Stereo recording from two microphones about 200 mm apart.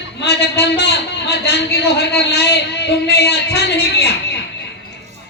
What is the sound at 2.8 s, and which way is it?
Music, 55° left (ahead or behind).